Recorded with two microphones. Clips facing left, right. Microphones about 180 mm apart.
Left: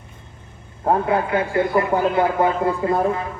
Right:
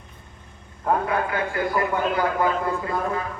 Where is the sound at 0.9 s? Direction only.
25° left (ahead or behind).